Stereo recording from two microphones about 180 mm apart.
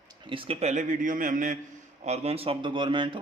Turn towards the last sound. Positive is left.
turn(degrees=-25)  # may be behind; listen again after turning